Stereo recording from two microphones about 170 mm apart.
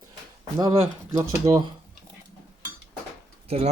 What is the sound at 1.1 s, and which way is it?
Speech, 20° right (ahead or behind).